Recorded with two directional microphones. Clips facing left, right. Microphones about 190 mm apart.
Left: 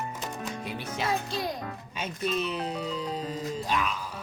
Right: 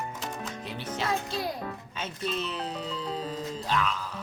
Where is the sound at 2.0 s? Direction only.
10° left (ahead or behind).